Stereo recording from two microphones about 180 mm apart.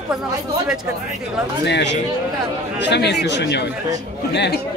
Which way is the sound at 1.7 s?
70° left (ahead or behind).